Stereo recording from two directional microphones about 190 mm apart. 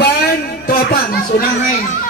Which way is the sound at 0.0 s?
55° left (ahead or behind).